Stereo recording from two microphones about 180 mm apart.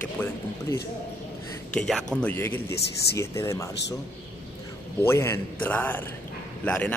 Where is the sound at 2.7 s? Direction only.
65° left (ahead or behind).